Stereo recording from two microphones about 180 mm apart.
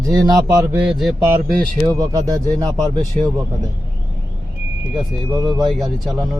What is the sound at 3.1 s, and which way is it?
Speech, 40° right (ahead or behind).